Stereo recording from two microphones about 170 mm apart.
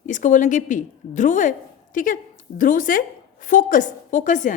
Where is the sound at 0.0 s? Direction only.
50° left (ahead or behind).